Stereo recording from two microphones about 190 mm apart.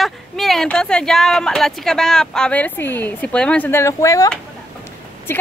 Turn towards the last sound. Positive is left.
turn(degrees=10)  # may be behind; listen again after turning